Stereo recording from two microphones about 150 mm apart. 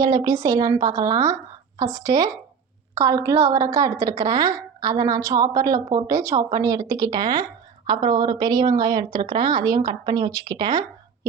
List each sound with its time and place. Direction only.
0.0 s speech: 25° right (ahead or behind)